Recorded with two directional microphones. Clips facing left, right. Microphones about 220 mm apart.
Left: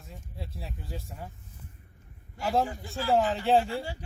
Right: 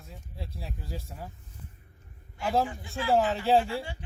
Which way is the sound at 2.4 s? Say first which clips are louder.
Even; centre (ahead or behind).